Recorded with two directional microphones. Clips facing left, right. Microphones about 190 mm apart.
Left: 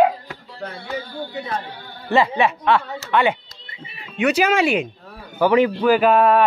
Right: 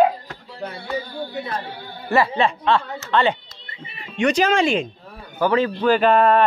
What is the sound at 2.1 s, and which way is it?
Speech, 15° left (ahead or behind).